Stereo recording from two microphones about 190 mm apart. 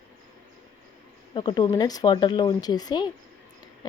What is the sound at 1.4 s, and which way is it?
Speech, 25° left (ahead or behind).